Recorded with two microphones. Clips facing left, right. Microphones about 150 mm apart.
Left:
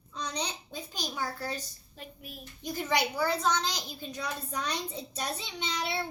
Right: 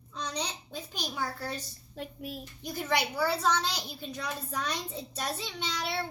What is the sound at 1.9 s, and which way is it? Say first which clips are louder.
Speech: right 7 dB; 70° right (ahead or behind).